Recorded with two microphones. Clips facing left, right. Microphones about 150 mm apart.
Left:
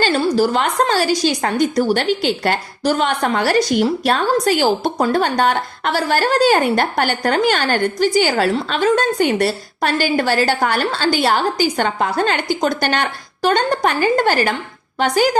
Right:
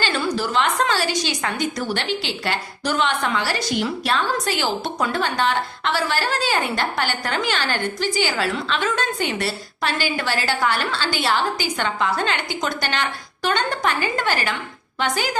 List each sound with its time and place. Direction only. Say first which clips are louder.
0.0 s a woman's voice: left 8 dB; 40° left (ahead or behind)